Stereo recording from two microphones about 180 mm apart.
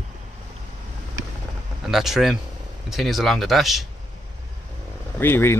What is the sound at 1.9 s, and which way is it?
Speech, centre (ahead or behind).